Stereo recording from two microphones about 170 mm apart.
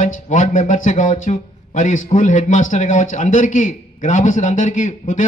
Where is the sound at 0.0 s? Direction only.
45° left (ahead or behind).